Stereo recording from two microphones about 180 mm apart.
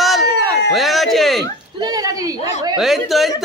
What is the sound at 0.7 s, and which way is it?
Speech, centre (ahead or behind).